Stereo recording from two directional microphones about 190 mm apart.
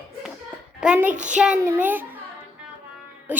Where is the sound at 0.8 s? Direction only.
5° right (ahead or behind).